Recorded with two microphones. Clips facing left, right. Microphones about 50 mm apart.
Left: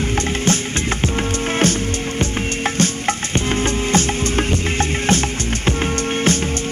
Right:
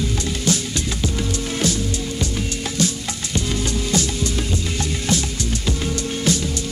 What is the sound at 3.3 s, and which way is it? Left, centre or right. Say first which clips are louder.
Music: left 1 dB; left.